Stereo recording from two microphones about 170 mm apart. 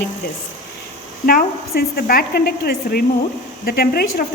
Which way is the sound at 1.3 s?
60° left (ahead or behind).